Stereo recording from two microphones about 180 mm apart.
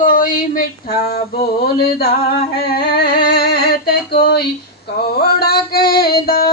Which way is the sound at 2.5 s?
60° left (ahead or behind).